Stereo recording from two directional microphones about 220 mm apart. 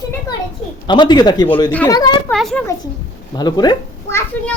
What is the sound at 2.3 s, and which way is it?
Speech, centre (ahead or behind).